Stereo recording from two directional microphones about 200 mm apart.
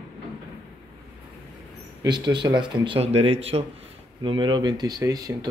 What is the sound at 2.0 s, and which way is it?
Speech, 20° right (ahead or behind).